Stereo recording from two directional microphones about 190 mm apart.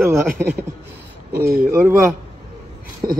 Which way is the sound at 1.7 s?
10° right (ahead or behind).